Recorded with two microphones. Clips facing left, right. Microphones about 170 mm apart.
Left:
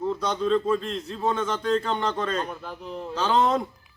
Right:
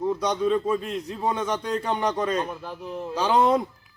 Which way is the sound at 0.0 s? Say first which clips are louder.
Right 2 dB; 15° right (ahead or behind).